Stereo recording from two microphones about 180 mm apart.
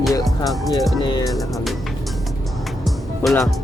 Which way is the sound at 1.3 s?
Centre (ahead or behind).